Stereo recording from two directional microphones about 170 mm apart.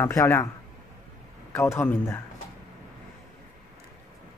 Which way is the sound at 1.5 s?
15° left (ahead or behind).